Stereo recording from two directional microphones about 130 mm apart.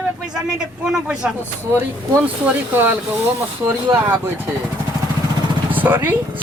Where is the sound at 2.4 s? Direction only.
10° right (ahead or behind).